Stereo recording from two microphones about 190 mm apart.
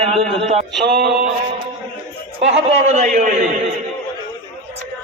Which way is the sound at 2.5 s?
35° right (ahead or behind).